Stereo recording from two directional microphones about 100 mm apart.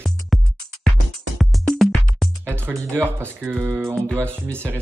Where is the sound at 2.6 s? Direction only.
20° right (ahead or behind).